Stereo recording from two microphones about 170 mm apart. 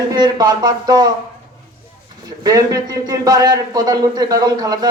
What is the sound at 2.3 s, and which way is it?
A man's voice, 20° right (ahead or behind).